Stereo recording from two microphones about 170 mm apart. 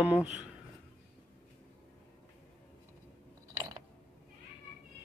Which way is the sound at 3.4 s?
20° right (ahead or behind).